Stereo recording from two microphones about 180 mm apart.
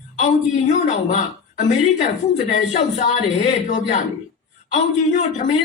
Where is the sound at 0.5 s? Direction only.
40° left (ahead or behind).